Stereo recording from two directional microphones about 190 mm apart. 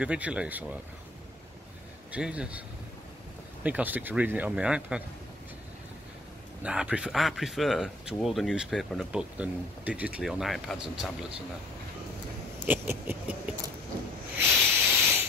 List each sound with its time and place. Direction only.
0.0 s speech: 5° right (ahead or behind)
2.1 s speech: 5° right (ahead or behind)
3.6 s speech: 10° right (ahead or behind)
6.6 s speech: 5° right (ahead or behind)
12.6 s a sound: 10° right (ahead or behind)
14.8 s steam: 10° right (ahead or behind)